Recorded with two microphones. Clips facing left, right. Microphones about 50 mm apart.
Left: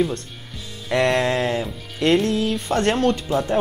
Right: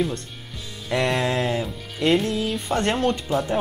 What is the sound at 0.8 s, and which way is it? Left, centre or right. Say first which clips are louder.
Speech: left 3 dB; centre.